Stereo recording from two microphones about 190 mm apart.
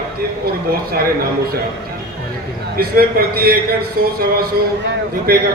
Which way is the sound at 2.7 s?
50° right (ahead or behind).